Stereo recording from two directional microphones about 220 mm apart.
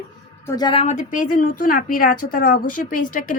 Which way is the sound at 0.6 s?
25° left (ahead or behind).